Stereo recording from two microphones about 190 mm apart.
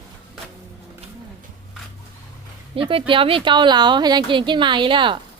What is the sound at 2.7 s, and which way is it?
Speech, 25° right (ahead or behind).